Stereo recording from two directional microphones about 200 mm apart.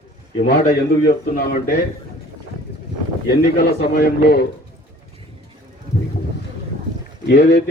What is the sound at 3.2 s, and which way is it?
A man's voice, 55° left (ahead or behind).